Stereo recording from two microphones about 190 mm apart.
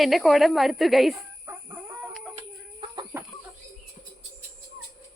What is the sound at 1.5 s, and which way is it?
Chicken, 15° right (ahead or behind).